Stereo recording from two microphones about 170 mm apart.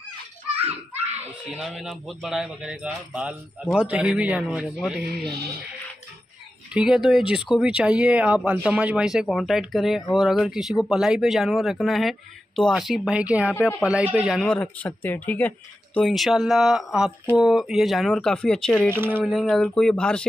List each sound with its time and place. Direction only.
1.2 s speech: 5° right (ahead or behind)
6.7 s speech: 5° right (ahead or behind)
13.6 s speech: 10° left (ahead or behind)
13.8 s speech: 10° right (ahead or behind)
14.4 s speech: 10° left (ahead or behind)